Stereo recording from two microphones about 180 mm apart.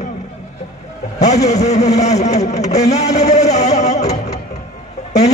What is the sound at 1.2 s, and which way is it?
Speech, 40° left (ahead or behind).